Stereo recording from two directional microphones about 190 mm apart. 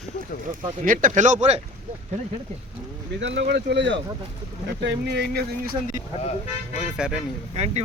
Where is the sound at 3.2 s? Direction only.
75° right (ahead or behind); by 5.7 s 55° right (ahead or behind).